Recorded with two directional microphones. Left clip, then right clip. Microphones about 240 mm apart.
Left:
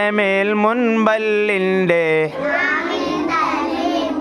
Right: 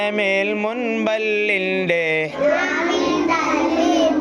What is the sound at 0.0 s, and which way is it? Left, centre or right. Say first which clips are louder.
Mantra: left 2 dB; left.